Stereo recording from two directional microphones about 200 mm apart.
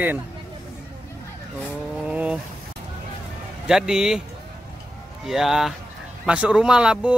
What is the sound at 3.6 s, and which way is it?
Speech, 5° right (ahead or behind).